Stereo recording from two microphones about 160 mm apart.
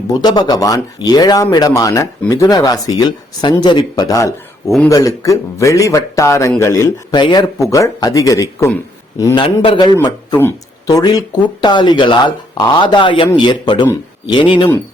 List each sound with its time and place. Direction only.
0.1 s speech: 25° left (ahead or behind)
9.4 s a man's voice: 35° left (ahead or behind)